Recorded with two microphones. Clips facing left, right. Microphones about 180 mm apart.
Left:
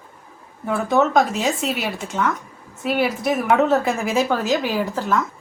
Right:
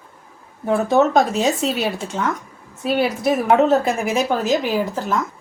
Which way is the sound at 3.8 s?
20° right (ahead or behind).